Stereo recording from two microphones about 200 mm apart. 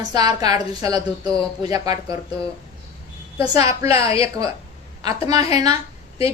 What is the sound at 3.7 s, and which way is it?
Speech, 30° left (ahead or behind).